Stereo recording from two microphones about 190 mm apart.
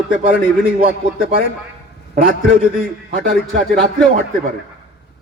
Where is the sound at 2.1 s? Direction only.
50° right (ahead or behind).